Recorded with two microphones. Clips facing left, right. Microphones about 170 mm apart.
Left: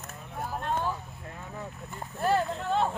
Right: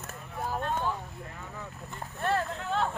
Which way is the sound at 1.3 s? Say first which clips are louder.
Left 5 dB; 15° left (ahead or behind).